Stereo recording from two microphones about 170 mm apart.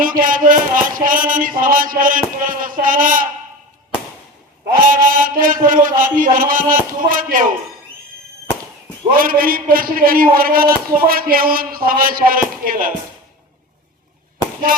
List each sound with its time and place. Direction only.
0.0 s a sound: 55° right (ahead or behind)
0.9 s a man's voice: 55° right (ahead or behind)
4.8 s a man's voice: 55° right (ahead or behind)
9.1 s a man's voice: 55° right (ahead or behind)